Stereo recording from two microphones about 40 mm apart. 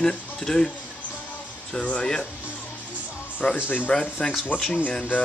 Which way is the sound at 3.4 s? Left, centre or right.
Left.